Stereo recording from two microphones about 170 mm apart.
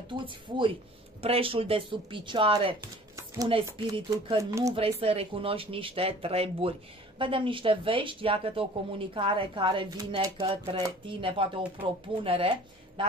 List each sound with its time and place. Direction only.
0.1 s speech: 30° right (ahead or behind)
3.7 s speech: 25° right (ahead or behind)
4.7 s speech: 35° right (ahead or behind)
10.4 s speech: 35° right (ahead or behind)